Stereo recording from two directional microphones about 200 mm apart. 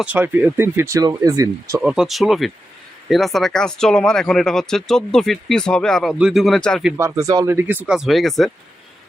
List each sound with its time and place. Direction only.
0.0 s speech: 10° right (ahead or behind)
1.8 s speech: 5° right (ahead or behind)
6.9 s speech: 15° right (ahead or behind); by 8.4 s centre (ahead or behind)